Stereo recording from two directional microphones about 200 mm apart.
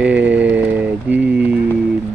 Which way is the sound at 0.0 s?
5° right (ahead or behind).